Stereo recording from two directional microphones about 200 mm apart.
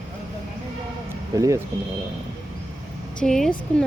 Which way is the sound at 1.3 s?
15° right (ahead or behind).